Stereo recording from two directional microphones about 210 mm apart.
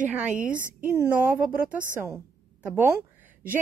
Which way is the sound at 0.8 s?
10° right (ahead or behind).